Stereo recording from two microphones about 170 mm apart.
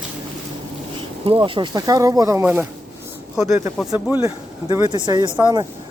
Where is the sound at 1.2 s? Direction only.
30° right (ahead or behind).